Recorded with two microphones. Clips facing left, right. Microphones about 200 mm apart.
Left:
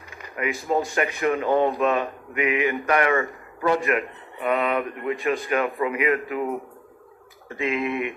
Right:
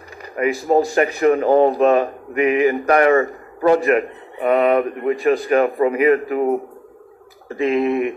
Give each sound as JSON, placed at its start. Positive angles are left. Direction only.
{"t": 0.4, "sound": "speech", "side_deg": -35}